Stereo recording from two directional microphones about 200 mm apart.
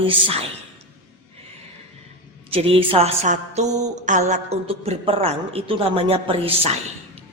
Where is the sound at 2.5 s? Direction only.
30° right (ahead or behind).